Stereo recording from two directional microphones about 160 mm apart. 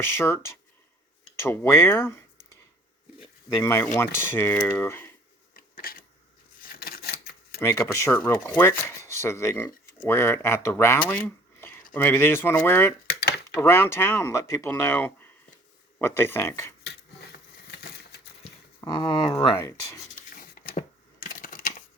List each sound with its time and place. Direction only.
0.0 s speech: 15° left (ahead or behind)
3.6 s speech: 15° left (ahead or behind)
5.5 s a sound: 65° left (ahead or behind)
7.6 s speech: 15° left (ahead or behind)
13.1 s dishes: 90° left
13.6 s speech: 15° left (ahead or behind)
16.8 s a sound: 90° left
18.8 s speech: 25° left (ahead or behind)
20.1 s a sound: 55° left (ahead or behind)
21.4 s typing: 60° left (ahead or behind)